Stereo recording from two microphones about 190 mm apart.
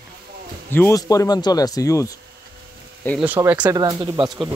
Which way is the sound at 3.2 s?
10° right (ahead or behind).